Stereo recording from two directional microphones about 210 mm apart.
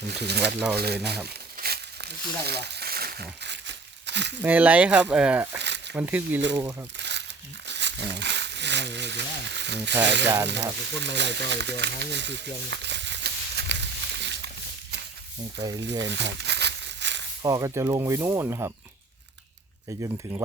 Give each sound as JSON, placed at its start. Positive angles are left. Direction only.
{"t": 0.1, "sound": "speech", "side_deg": -50}
{"t": 1.5, "sound": "crumpling", "side_deg": -50}
{"t": 4.4, "sound": "speech", "side_deg": -5}
{"t": 5.5, "sound": "a sound", "side_deg": -55}
{"t": 5.9, "sound": "speech", "side_deg": -10}
{"t": 7.0, "sound": "crumpling", "side_deg": -55}
{"t": 7.7, "sound": "speech", "side_deg": -55}
{"t": 10.9, "sound": "a sound", "side_deg": -55}
{"t": 15.8, "sound": "crumpling", "side_deg": -55}
{"t": 17.4, "sound": "speech", "side_deg": -15}
{"t": 19.9, "sound": "speech", "side_deg": -15}